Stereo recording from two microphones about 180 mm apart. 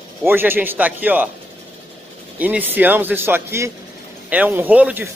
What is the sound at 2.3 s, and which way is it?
Speech, 10° right (ahead or behind).